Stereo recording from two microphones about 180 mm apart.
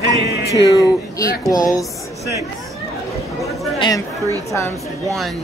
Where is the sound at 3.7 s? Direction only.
25° left (ahead or behind).